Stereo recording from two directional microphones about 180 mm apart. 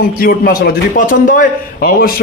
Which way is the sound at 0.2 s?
55° left (ahead or behind).